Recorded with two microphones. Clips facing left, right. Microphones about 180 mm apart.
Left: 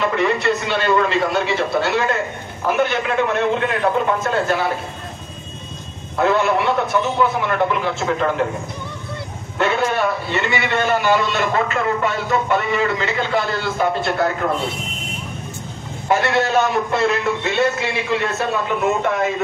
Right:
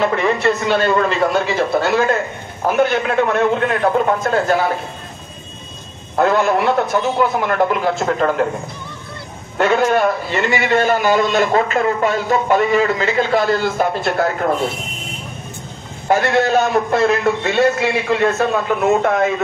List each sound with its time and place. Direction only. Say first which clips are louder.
0.0 s a man's voice: right 2 dB; 40° right (ahead or behind)
6.1 s a man's voice: right 2 dB; 45° right (ahead or behind)
9.6 s a man's voice: right 4 dB; 45° right (ahead or behind)
16.1 s a man's voice: right 3 dB; 45° right (ahead or behind)